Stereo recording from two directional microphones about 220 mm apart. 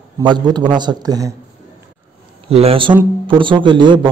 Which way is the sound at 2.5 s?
25° right (ahead or behind).